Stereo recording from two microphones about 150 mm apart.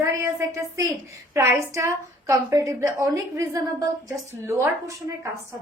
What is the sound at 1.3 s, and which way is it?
A woman's voice, 15° right (ahead or behind).